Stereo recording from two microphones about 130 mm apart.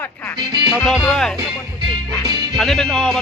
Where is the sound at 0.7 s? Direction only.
Centre (ahead or behind).